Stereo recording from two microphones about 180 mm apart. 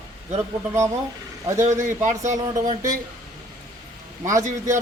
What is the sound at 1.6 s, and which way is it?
Speech, 40° right (ahead or behind).